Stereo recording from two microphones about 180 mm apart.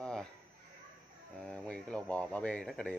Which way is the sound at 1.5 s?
5° left (ahead or behind).